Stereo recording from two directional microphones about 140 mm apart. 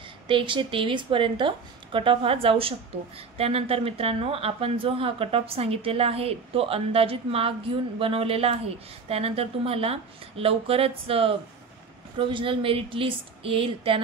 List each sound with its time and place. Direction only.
0.3 s a woman's voice: 35° right (ahead or behind)